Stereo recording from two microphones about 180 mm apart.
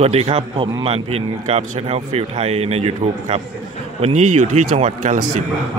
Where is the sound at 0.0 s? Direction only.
35° right (ahead or behind).